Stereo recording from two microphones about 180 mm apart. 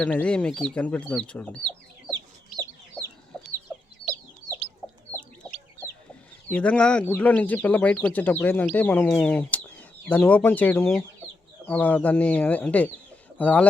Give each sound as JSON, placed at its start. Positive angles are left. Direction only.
{"t": 0.0, "sound": "speech", "side_deg": 5}
{"t": 2.0, "sound": "chicken", "side_deg": -20}
{"t": 6.5, "sound": "speech", "side_deg": 5}